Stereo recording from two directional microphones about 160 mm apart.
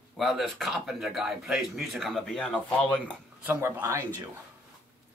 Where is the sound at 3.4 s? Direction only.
15° right (ahead or behind).